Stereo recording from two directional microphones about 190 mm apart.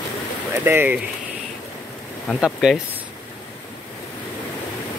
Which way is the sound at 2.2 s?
Centre (ahead or behind).